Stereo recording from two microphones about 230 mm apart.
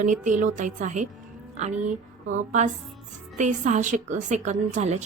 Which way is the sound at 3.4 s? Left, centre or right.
Right.